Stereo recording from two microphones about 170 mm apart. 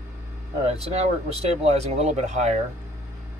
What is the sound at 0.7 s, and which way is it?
Speech, 35° right (ahead or behind).